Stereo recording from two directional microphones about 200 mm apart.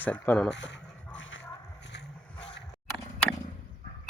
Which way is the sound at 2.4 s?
60° left (ahead or behind).